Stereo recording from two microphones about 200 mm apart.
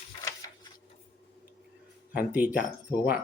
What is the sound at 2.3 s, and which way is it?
Speech, 10° right (ahead or behind).